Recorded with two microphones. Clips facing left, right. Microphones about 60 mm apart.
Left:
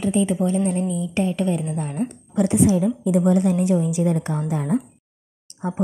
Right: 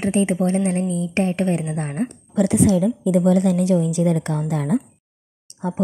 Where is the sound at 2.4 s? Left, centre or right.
Right.